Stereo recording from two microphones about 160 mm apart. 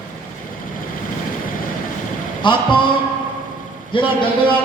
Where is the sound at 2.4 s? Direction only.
30° left (ahead or behind).